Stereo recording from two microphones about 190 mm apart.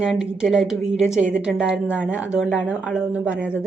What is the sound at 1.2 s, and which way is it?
Speech, 45° right (ahead or behind).